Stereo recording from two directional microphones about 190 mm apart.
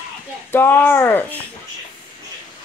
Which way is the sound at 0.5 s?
10° left (ahead or behind).